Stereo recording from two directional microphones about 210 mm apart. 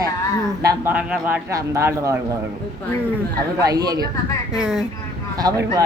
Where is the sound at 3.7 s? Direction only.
20° right (ahead or behind).